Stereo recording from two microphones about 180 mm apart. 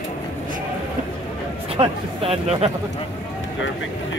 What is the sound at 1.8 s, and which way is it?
Speech, 35° right (ahead or behind).